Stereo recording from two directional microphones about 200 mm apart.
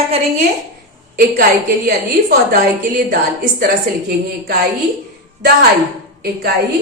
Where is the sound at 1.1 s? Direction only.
50° right (ahead or behind).